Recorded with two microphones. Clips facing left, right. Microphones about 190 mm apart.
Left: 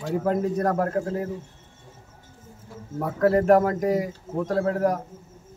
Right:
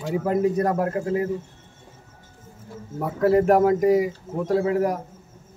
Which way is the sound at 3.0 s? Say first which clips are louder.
Right 2 dB; 5° right (ahead or behind).